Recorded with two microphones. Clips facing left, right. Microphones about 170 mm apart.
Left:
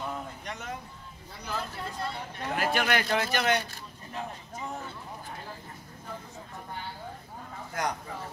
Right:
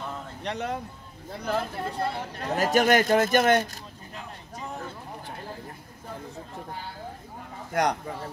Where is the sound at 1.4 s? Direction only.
55° right (ahead or behind).